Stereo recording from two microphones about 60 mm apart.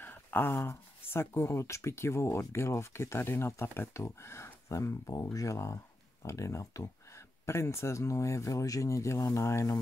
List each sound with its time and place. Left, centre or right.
0.0 s a sound: left
0.7 s speech: left
4.7 s speech: left